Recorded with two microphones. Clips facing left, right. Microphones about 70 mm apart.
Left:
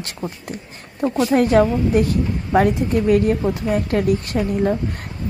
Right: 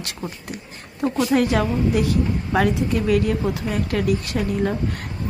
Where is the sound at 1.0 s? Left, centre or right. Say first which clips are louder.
Left 2 dB; centre.